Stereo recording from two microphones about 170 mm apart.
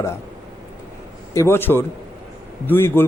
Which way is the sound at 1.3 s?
15° left (ahead or behind).